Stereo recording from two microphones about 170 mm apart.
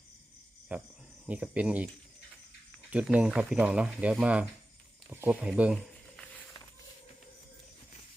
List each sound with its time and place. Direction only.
0.7 s speech: 10° right (ahead or behind)
2.9 s speech: 5° right (ahead or behind)